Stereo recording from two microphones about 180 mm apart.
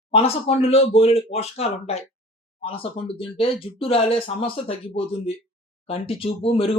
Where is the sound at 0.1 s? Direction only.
35° left (ahead or behind).